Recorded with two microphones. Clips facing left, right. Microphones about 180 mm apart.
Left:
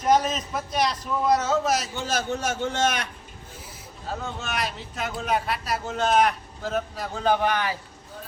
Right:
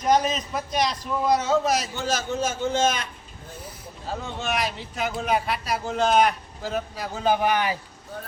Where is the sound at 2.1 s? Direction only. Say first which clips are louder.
Right 1 dB; 65° left (ahead or behind).